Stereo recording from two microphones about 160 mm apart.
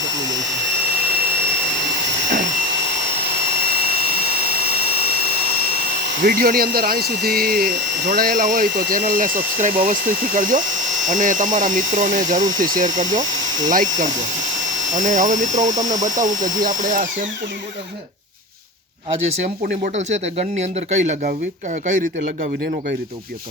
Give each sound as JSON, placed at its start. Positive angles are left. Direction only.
{"t": 6.2, "sound": "speech", "side_deg": -70}
{"t": 20.0, "sound": "speech", "side_deg": -45}